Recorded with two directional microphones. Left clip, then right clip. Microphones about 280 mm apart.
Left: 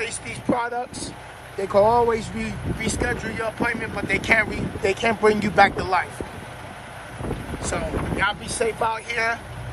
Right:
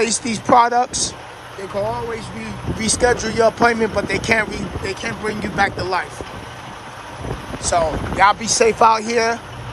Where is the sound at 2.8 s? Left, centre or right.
Centre.